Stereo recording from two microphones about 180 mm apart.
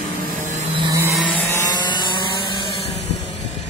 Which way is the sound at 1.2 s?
10° left (ahead or behind).